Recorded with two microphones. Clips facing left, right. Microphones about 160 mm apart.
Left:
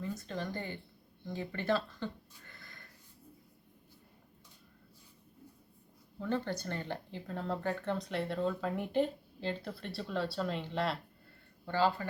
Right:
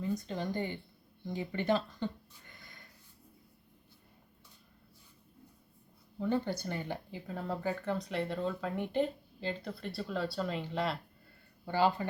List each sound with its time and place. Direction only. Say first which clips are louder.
0.0 s speech: right 3 dB; 15° right (ahead or behind)
6.1 s speech: right 2 dB; 15° right (ahead or behind)
11.6 s speech: right 1 dB; 15° right (ahead or behind)